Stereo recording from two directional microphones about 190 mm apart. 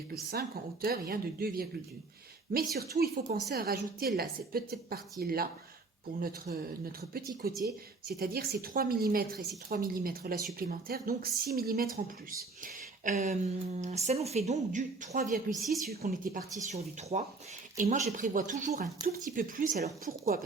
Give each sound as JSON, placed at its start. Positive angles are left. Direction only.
{"t": 0.1, "sound": "a woman's voice", "side_deg": -55}
{"t": 12.6, "sound": "a sound", "side_deg": -40}
{"t": 13.7, "sound": "a woman's voice", "side_deg": -35}